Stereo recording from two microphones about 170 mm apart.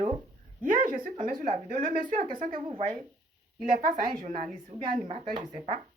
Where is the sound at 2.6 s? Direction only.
40° right (ahead or behind).